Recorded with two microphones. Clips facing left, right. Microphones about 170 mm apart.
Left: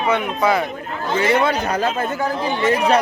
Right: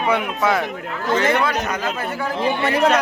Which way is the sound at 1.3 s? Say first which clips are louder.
Left 3 dB; 30° left (ahead or behind).